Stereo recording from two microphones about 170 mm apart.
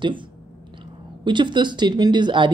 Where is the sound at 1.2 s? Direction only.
25° right (ahead or behind).